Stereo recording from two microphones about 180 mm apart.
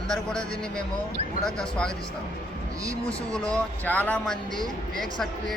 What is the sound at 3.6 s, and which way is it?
Speech, 10° left (ahead or behind).